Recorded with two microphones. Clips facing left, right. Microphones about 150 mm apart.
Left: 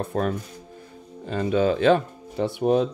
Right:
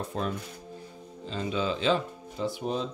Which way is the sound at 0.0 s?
55° left (ahead or behind).